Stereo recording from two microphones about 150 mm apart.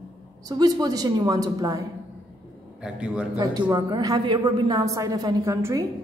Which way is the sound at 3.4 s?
30° right (ahead or behind).